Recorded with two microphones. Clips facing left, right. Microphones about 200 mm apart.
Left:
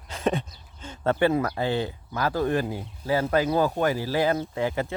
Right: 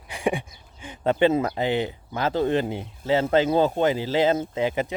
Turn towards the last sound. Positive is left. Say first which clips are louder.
# right 2 dB
turn(degrees=-20)  # may be behind; listen again after turning